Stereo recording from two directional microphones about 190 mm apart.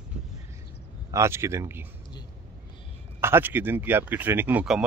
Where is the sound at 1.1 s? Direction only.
15° right (ahead or behind).